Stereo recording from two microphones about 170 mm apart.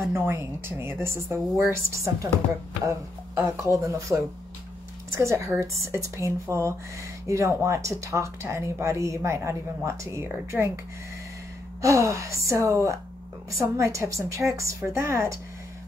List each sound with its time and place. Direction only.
0.1 s speech: 15° right (ahead or behind)
11.8 s speech: 20° right (ahead or behind)